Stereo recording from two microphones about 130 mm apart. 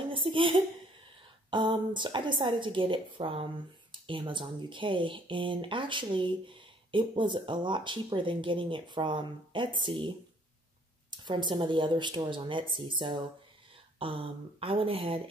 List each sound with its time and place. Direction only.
0.1 s speech: 40° right (ahead or behind)
11.1 s speech: 35° right (ahead or behind)